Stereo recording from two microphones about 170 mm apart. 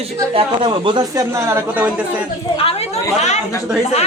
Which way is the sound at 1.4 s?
15° right (ahead or behind).